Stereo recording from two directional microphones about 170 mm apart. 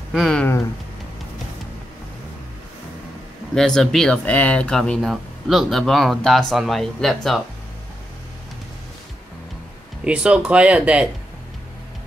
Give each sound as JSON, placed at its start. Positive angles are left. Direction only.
{"t": 0.1, "sound": "speech", "side_deg": 0}
{"t": 3.5, "sound": "speech", "side_deg": 0}
{"t": 10.0, "sound": "speech", "side_deg": -5}